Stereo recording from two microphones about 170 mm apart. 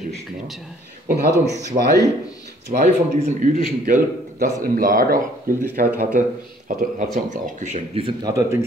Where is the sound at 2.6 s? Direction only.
55° right (ahead or behind).